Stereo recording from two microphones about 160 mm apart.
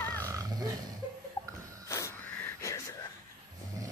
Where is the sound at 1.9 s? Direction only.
20° left (ahead or behind).